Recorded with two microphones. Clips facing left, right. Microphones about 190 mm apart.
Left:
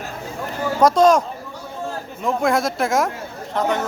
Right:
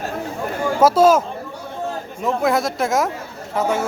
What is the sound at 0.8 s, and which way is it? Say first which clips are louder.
Speech: right 1 dB; 5° right (ahead or behind).